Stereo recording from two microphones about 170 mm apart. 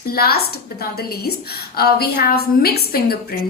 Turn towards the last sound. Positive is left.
turn(degrees=65)  # may be behind; listen again after turning